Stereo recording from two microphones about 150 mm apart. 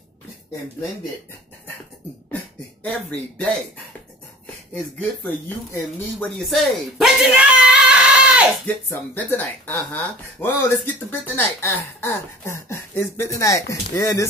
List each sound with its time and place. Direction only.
2.8 s speech: 10° left (ahead or behind)
4.7 s speech: 10° left (ahead or behind)
6.1 s a sound: 5° left (ahead or behind)
8.6 s speech: 10° left (ahead or behind)